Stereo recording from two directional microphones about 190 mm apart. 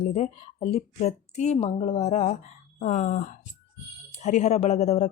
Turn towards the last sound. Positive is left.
turn(degrees=35)  # may be behind; listen again after turning